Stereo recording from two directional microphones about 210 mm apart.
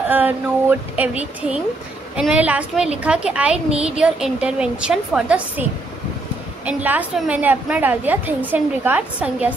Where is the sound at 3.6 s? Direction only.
30° right (ahead or behind).